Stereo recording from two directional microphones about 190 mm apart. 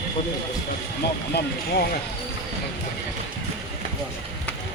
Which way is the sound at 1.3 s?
55° left (ahead or behind).